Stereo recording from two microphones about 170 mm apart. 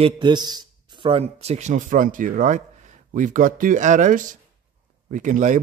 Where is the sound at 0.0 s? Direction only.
25° right (ahead or behind).